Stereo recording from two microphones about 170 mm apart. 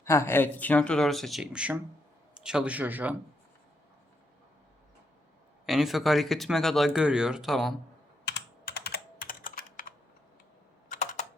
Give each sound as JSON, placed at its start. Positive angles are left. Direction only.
{"t": 0.0, "sound": "speech", "side_deg": 15}
{"t": 5.6, "sound": "speech", "side_deg": 0}
{"t": 8.8, "sound": "computer keyboard", "side_deg": 60}
{"t": 10.8, "sound": "typing", "side_deg": 45}